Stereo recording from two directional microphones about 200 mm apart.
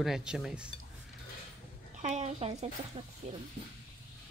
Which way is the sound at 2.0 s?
35° right (ahead or behind).